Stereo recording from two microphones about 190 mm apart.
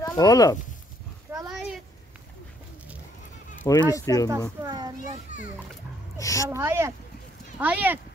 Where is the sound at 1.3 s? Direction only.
10° right (ahead or behind).